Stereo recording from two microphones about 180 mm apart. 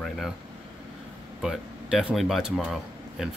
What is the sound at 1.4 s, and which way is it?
A man's voice, centre (ahead or behind).